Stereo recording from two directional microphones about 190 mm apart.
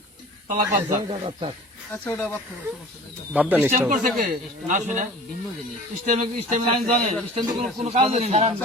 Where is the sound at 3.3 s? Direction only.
5° right (ahead or behind).